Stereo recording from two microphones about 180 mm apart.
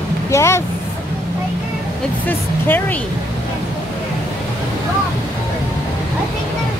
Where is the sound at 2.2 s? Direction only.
10° left (ahead or behind).